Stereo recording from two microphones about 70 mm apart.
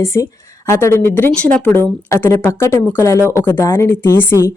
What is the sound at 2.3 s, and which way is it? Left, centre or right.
Speech, left.